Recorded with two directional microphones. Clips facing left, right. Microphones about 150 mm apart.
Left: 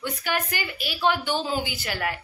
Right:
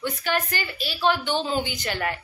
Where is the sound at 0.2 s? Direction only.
10° left (ahead or behind).